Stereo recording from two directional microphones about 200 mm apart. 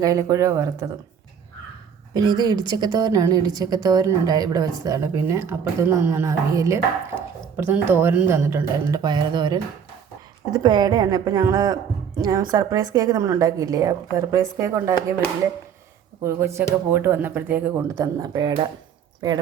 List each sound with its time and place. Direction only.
0.0 s a woman's voice: 15° right (ahead or behind)
2.1 s a woman's voice: 20° right (ahead or behind)
16.2 s a woman's voice: 15° right (ahead or behind)